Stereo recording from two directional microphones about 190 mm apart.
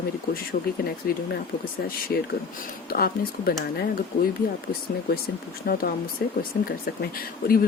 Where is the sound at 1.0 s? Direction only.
50° left (ahead or behind).